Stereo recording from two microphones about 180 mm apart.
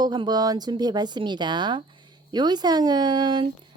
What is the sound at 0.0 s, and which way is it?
Speech, 25° right (ahead or behind).